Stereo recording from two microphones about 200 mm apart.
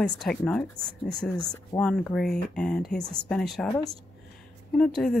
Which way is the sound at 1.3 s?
20° left (ahead or behind).